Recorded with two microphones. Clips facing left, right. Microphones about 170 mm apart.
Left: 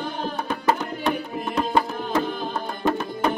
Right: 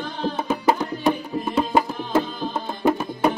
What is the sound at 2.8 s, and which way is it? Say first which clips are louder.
Music: right 3 dB; 10° right (ahead or behind).